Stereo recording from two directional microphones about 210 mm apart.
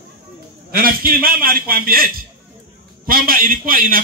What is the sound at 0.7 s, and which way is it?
A man's voice, 45° right (ahead or behind).